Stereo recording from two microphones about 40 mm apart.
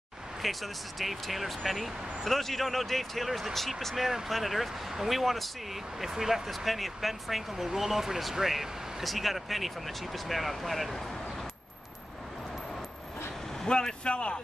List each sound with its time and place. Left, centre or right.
0.4 s speech: centre
13.7 s speech: left